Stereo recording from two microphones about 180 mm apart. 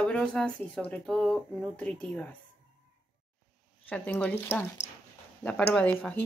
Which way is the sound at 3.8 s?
5° left (ahead or behind).